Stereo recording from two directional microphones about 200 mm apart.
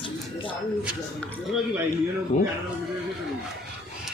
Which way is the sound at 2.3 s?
35° left (ahead or behind).